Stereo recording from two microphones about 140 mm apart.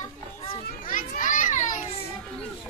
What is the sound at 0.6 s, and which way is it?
Children playing, 75° left (ahead or behind).